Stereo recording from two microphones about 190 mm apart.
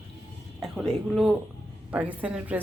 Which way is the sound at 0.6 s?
Centre (ahead or behind).